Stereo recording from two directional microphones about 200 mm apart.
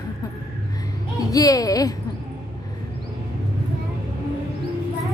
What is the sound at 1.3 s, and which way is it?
Speech, 15° left (ahead or behind).